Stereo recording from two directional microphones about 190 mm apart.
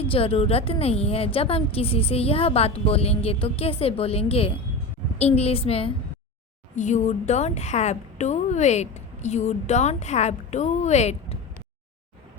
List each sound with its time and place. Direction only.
0.0 s a woman's voice: 30° left (ahead or behind)